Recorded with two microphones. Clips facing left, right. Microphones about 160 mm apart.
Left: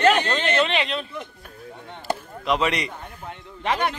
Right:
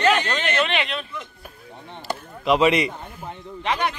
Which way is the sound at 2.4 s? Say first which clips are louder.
Right 5 dB; 5° right (ahead or behind).